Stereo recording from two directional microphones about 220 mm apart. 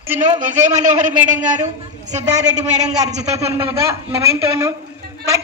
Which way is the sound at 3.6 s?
10° right (ahead or behind).